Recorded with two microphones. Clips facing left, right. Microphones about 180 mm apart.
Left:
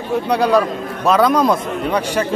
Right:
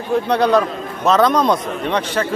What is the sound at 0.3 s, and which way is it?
A man's voice, 10° left (ahead or behind).